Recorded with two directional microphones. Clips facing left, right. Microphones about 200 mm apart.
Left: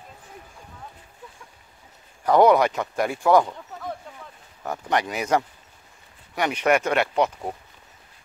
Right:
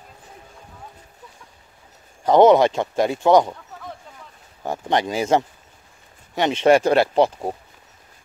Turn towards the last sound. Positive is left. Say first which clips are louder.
# right 5 dB
turn(degrees=-30)  # may be behind; listen again after turning